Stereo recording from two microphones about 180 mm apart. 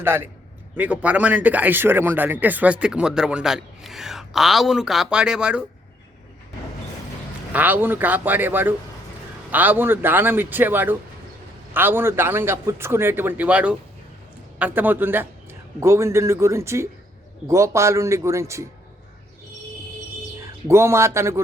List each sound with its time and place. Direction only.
0.0 s a man's voice: 10° right (ahead or behind)
7.5 s a man's voice: 10° right (ahead or behind)
20.7 s a man's voice: 15° right (ahead or behind)